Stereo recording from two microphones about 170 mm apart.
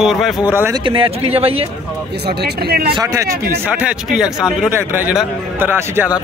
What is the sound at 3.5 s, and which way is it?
A man's voice, 5° right (ahead or behind).